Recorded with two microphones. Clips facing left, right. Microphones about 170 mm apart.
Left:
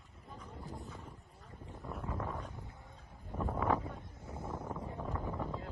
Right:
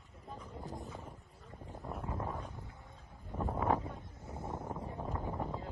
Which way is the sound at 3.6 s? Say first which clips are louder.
Even; 20° right (ahead or behind).